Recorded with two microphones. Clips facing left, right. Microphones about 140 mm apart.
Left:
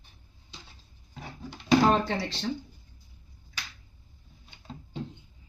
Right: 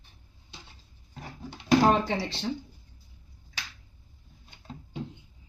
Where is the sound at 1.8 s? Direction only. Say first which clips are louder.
Right 1 dB; 15° right (ahead or behind).